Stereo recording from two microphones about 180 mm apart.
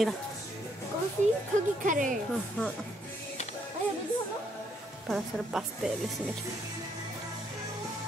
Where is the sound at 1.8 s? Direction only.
45° right (ahead or behind).